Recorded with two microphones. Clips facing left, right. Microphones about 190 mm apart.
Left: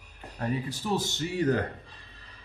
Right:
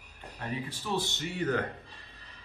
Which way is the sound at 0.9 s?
35° left (ahead or behind).